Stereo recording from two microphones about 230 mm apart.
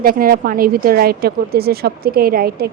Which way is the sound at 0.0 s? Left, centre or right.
Right.